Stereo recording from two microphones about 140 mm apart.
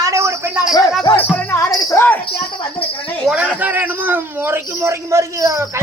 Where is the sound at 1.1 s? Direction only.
15° left (ahead or behind).